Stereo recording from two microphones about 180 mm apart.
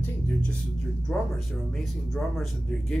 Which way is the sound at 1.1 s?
5° left (ahead or behind).